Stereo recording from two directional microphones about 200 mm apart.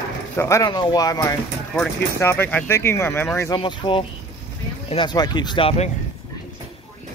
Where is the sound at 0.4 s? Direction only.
15° left (ahead or behind).